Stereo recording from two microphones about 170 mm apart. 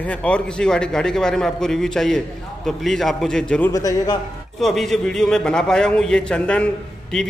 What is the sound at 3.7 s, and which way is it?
Speech, 20° left (ahead or behind).